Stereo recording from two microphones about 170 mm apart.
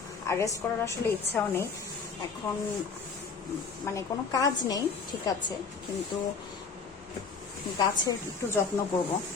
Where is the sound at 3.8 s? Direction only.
15° left (ahead or behind).